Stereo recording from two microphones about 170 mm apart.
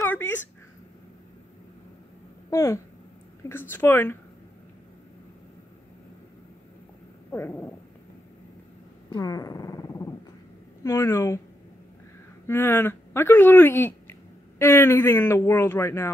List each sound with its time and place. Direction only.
0.0 s a sound: 10° left (ahead or behind)
2.5 s speech: 15° left (ahead or behind)
7.2 s cat: 10° left (ahead or behind)
9.1 s purr: 20° left (ahead or behind)
10.8 s speech: 20° left (ahead or behind)
12.4 s speech: 15° left (ahead or behind)